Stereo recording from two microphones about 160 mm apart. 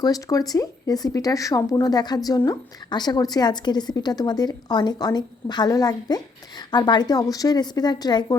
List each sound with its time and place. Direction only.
0.0 s speech: 20° left (ahead or behind)